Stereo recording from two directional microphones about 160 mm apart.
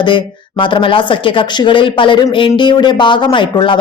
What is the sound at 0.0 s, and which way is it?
Speech, 30° left (ahead or behind).